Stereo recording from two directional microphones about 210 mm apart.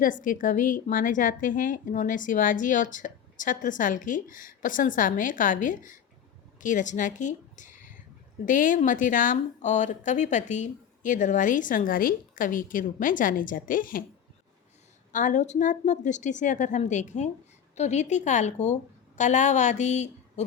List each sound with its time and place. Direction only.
0.0 s a woman's voice: 40° left (ahead or behind)
15.1 s a woman's voice: 35° left (ahead or behind)